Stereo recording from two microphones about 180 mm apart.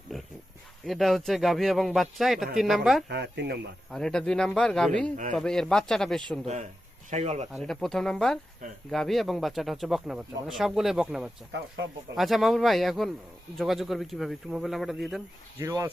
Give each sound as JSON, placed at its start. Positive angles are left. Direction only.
{"t": 0.1, "sound": "pig", "side_deg": 0}
{"t": 0.9, "sound": "speech", "side_deg": 0}
{"t": 3.1, "sound": "speech", "side_deg": -65}
{"t": 3.9, "sound": "speech", "side_deg": 5}
{"t": 6.4, "sound": "speech", "side_deg": -40}
{"t": 7.5, "sound": "speech", "side_deg": 0}
{"t": 15.5, "sound": "speech", "side_deg": -15}